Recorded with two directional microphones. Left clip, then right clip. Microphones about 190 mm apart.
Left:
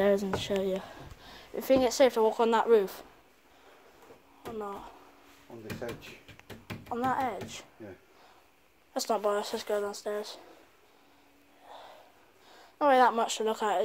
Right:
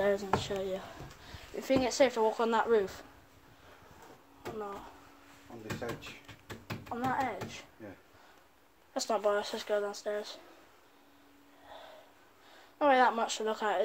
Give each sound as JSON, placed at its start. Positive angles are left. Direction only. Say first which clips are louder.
{"t": 0.0, "sound": "speech", "louder": "left 3 dB", "side_deg": 60}
{"t": 4.6, "sound": "speech", "louder": "left 3 dB", "side_deg": 50}
{"t": 6.4, "sound": "speech", "louder": "right 1 dB", "side_deg": 40}
{"t": 8.9, "sound": "speech", "louder": "left 1 dB", "side_deg": 45}
{"t": 11.7, "sound": "snort", "louder": "left 2 dB", "side_deg": 45}
{"t": 12.5, "sound": "speech", "louder": "left 3 dB", "side_deg": 40}